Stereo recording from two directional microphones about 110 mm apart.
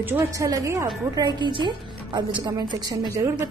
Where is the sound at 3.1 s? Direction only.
25° right (ahead or behind).